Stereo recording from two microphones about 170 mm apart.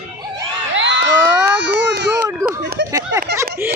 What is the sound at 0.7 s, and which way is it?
Crowd, 90° right.